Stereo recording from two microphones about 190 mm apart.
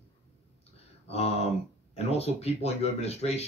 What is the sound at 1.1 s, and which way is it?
Speech, 35° left (ahead or behind).